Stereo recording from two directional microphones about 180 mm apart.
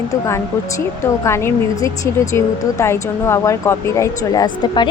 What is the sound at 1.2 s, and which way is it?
Speech, 15° left (ahead or behind).